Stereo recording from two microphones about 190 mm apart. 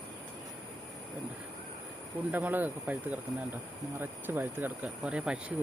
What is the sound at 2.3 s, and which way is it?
Speech, 10° right (ahead or behind).